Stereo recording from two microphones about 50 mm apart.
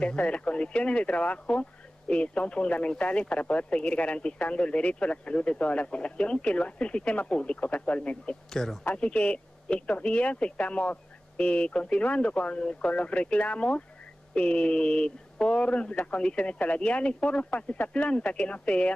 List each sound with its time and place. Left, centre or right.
0.0 s speech: left
8.6 s speech: centre
8.9 s speech: left